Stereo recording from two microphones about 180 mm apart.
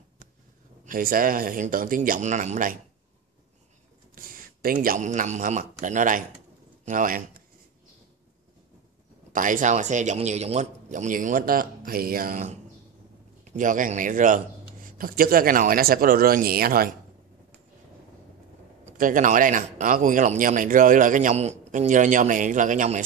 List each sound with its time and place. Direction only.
0.8 s speech: 50° right (ahead or behind)
4.1 s a man's voice: 55° right (ahead or behind)
9.3 s speech: 45° right (ahead or behind)
18.9 s speech: 45° right (ahead or behind)